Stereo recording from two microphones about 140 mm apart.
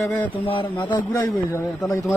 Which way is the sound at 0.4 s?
40° left (ahead or behind).